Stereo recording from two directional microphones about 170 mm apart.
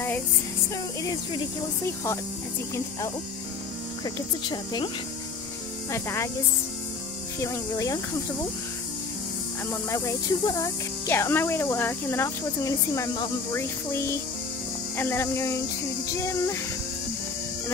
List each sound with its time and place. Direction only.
4.0 s speech: 25° left (ahead or behind)
5.9 s speech: 15° left (ahead or behind)
7.3 s speech: 15° left (ahead or behind)
9.7 s speech: 15° left (ahead or behind)